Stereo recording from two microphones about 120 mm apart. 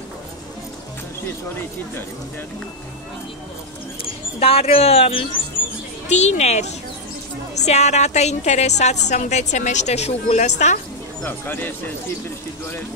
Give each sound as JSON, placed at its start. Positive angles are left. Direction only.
{"t": 4.0, "sound": "speech", "side_deg": 55}
{"t": 6.0, "sound": "a woman's voice", "side_deg": 70}
{"t": 11.2, "sound": "speech", "side_deg": 15}